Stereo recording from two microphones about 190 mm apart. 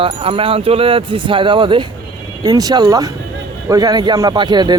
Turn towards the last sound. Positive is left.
turn(degrees=-20)  # may be behind; listen again after turning